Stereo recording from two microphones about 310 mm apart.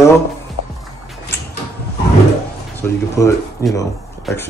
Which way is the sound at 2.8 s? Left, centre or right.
Centre.